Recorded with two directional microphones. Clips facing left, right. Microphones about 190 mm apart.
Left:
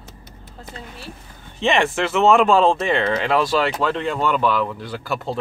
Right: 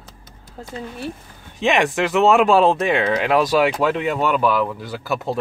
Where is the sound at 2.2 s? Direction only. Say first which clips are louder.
Even; 5° right (ahead or behind).